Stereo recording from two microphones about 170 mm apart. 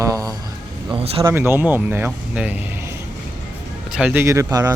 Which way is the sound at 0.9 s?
35° right (ahead or behind).